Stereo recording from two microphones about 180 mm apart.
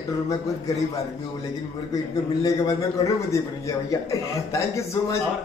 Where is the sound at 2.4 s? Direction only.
15° left (ahead or behind).